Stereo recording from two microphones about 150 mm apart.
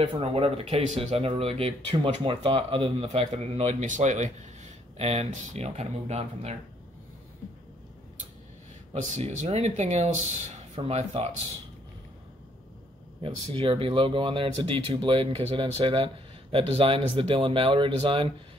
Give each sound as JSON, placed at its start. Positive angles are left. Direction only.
{"t": 0.0, "sound": "speech", "side_deg": -35}
{"t": 9.1, "sound": "speech", "side_deg": -50}
{"t": 10.8, "sound": "speech", "side_deg": -40}
{"t": 13.2, "sound": "speech", "side_deg": -35}